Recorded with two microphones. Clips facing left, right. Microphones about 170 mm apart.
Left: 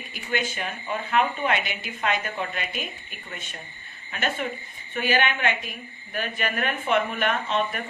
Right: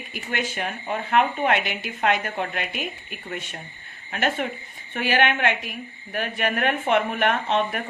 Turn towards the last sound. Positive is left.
turn(degrees=-60)  # may be behind; listen again after turning